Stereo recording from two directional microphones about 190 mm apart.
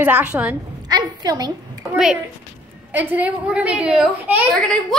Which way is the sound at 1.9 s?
5° right (ahead or behind).